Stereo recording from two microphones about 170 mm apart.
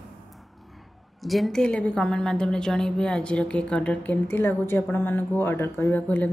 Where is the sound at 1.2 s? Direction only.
Centre (ahead or behind).